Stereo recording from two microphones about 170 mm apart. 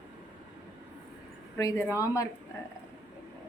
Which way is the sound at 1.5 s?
15° left (ahead or behind).